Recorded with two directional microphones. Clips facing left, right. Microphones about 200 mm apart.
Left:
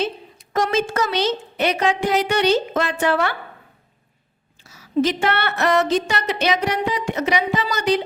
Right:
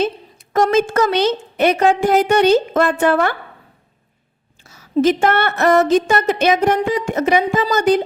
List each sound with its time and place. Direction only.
0.0 s a woman's voice: 50° right (ahead or behind)
4.6 s a woman's voice: 50° right (ahead or behind)